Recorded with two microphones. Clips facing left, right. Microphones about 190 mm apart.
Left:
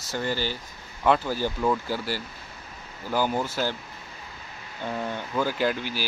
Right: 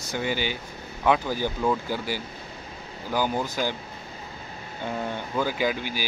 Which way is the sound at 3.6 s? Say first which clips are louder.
Right 1 dB; 5° right (ahead or behind).